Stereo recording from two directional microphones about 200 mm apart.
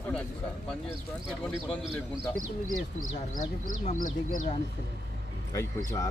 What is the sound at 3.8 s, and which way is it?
Speech, 40° left (ahead or behind).